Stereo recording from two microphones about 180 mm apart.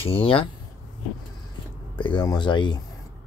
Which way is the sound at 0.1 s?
30° left (ahead or behind).